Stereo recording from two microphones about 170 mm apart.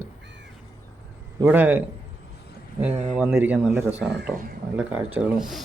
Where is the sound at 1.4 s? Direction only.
10° right (ahead or behind).